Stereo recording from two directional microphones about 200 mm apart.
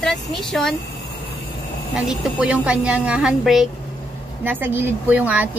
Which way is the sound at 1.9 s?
5° right (ahead or behind).